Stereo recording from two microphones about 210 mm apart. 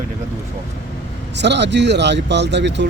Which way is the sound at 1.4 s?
55° right (ahead or behind).